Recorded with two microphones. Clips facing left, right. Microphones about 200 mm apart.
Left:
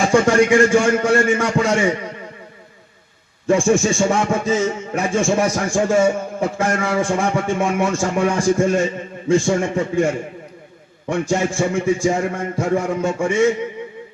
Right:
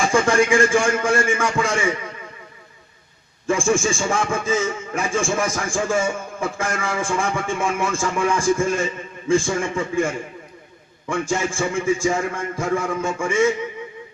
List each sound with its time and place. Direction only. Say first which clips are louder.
0.0 s a man's voice: left 4 dB; 40° left (ahead or behind)
3.4 s speech: left 4 dB; 40° left (ahead or behind)